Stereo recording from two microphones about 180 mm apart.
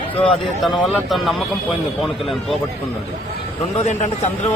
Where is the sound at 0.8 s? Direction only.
Centre (ahead or behind).